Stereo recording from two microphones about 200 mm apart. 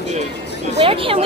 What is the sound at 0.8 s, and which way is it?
Speech, 30° right (ahead or behind).